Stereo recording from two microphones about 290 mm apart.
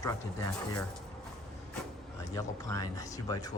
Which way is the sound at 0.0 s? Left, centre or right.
Centre.